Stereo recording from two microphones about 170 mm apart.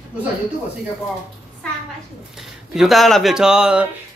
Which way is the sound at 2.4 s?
Centre (ahead or behind).